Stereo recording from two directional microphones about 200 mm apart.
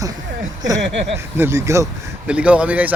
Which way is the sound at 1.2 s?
10° right (ahead or behind).